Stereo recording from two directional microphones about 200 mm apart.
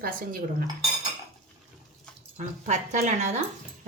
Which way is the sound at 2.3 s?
35° right (ahead or behind).